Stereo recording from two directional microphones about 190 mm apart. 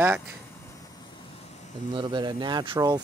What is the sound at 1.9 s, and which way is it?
Speech, 25° right (ahead or behind).